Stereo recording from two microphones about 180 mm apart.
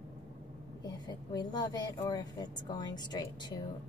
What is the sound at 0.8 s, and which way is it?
Speech, 20° left (ahead or behind).